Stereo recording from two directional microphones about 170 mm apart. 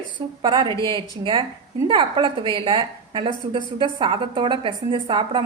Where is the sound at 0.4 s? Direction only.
30° right (ahead or behind).